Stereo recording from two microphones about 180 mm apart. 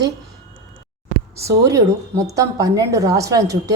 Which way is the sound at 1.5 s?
20° right (ahead or behind).